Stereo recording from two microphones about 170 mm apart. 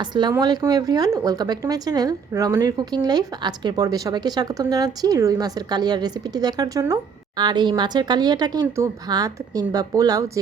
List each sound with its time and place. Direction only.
0.0 s a woman's voice: 25° right (ahead or behind)